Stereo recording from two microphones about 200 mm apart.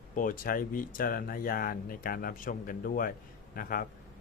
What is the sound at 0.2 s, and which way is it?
A man's voice, 45° left (ahead or behind).